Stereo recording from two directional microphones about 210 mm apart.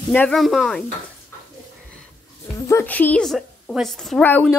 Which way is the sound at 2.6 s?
10° left (ahead or behind).